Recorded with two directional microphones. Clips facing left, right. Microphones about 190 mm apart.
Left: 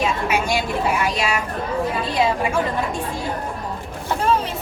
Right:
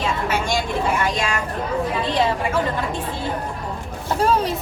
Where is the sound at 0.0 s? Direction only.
10° left (ahead or behind).